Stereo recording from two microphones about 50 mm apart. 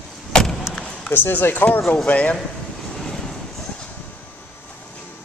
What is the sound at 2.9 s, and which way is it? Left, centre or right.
Train, centre.